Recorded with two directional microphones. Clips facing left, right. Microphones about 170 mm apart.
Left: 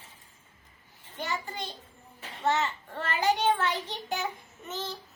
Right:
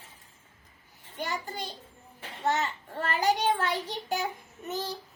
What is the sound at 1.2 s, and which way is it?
A child's voice, 40° right (ahead or behind).